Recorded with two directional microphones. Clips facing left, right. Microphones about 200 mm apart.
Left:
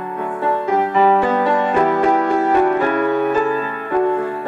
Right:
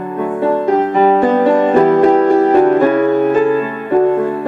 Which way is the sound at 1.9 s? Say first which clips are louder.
Right 7 dB; 40° right (ahead or behind).